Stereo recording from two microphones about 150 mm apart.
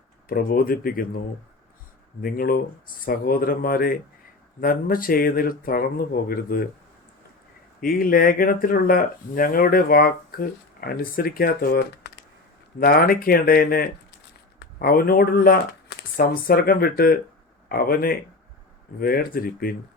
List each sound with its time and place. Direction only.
0.3 s speech: 75° left (ahead or behind)
2.2 s speech: 75° left (ahead or behind)
7.8 s speech: 70° left (ahead or behind)